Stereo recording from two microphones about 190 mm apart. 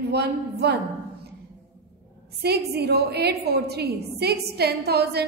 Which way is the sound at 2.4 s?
60° right (ahead or behind).